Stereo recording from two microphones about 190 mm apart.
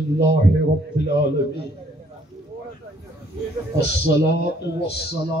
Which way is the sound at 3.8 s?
65° left (ahead or behind).